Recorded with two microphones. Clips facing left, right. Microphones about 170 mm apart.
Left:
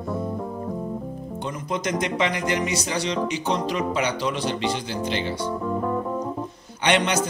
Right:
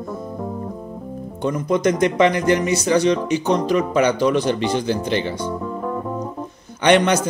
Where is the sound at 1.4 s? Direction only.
50° right (ahead or behind).